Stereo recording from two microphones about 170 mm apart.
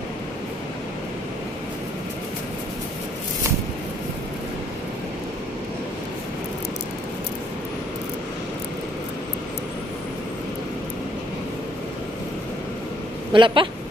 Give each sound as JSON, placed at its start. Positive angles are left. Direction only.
{"t": 13.3, "sound": "speech", "side_deg": -30}